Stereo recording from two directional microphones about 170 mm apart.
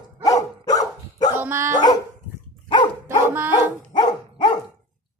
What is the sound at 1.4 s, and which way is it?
Dog, 15° right (ahead or behind).